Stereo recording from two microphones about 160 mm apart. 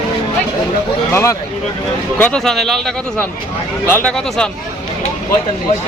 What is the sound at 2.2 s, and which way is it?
Speech, 5° left (ahead or behind).